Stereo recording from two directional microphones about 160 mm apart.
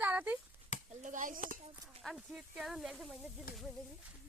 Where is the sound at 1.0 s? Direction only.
55° right (ahead or behind).